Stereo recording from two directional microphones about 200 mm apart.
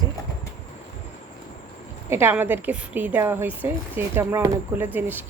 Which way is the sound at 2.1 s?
10° right (ahead or behind).